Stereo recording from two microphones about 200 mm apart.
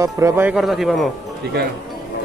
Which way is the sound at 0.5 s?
Centre (ahead or behind).